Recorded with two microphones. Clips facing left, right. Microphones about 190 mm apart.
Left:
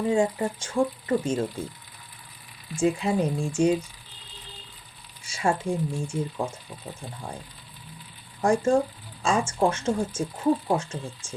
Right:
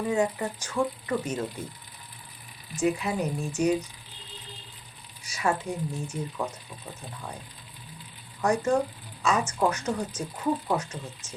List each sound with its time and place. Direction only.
0.1 s speech: 30° left (ahead or behind)
2.7 s speech: 30° left (ahead or behind)
5.2 s speech: 30° left (ahead or behind)
8.4 s speech: 25° left (ahead or behind)